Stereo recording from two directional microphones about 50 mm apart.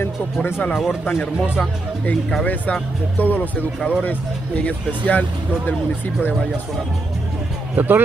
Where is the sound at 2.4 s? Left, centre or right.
Left.